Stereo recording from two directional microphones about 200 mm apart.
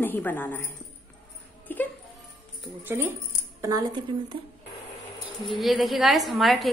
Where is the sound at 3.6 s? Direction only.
15° right (ahead or behind).